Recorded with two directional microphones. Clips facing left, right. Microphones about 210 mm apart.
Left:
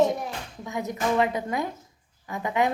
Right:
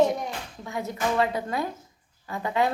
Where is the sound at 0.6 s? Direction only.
20° left (ahead or behind).